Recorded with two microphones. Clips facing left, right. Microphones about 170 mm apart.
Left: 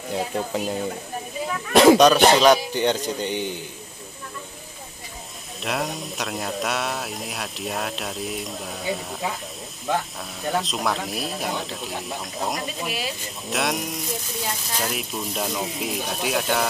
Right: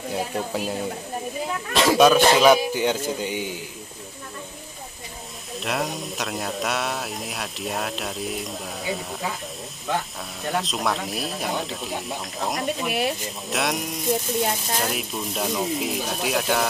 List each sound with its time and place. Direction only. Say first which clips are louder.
0.5 s speech: left 1 dB; centre (ahead or behind)
1.7 s speech: left 8 dB; 55° left (ahead or behind)
2.0 s speech: left 1 dB; 5° right (ahead or behind)
5.6 s speech: even; centre (ahead or behind)
10.4 s speech: left 1 dB; centre (ahead or behind)
14.1 s speech: right 6 dB; 55° right (ahead or behind)
14.8 s speech: right 1 dB; centre (ahead or behind)